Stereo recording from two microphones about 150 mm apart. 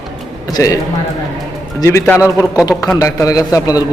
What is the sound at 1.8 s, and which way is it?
A man's voice, 20° left (ahead or behind).